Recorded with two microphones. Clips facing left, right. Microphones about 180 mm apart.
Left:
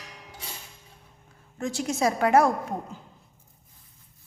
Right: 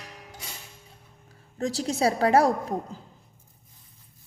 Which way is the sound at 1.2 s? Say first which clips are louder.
Right 2 dB; 35° right (ahead or behind).